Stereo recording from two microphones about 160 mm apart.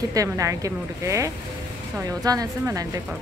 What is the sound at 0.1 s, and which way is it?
Speech, 20° right (ahead or behind).